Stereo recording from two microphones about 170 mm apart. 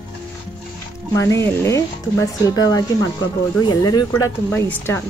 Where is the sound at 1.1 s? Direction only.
15° left (ahead or behind).